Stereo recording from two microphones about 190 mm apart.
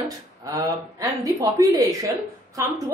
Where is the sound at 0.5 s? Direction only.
15° right (ahead or behind).